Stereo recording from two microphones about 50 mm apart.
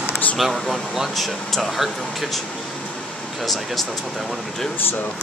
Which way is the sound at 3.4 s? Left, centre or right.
Centre.